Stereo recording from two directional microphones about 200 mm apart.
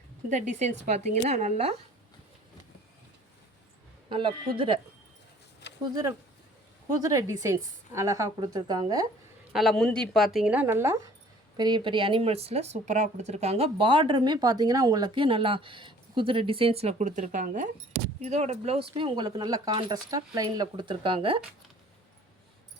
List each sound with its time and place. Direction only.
0.3 s speech: 35° right (ahead or behind)
4.1 s speech: 25° right (ahead or behind)
5.9 s a woman's voice: 20° right (ahead or behind)
9.5 s speech: centre (ahead or behind); by 21.4 s 25° right (ahead or behind)